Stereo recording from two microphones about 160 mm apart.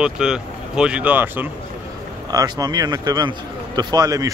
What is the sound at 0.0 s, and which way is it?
Speech, 5° right (ahead or behind).